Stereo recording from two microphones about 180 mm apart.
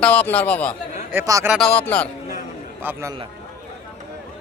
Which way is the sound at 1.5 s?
5° left (ahead or behind).